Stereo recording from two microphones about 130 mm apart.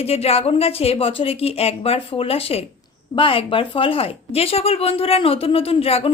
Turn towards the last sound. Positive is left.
turn(degrees=50)  # may be behind; listen again after turning